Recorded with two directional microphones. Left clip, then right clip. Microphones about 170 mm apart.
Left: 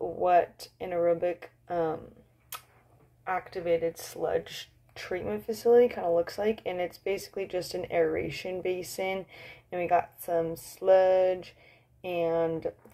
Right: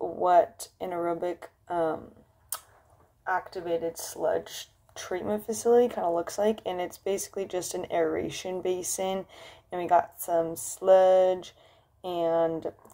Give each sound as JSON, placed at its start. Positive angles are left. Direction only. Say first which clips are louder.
{"t": 0.2, "sound": "speech", "louder": "right 2 dB", "side_deg": -35}
{"t": 3.3, "sound": "speech", "louder": "even", "side_deg": -30}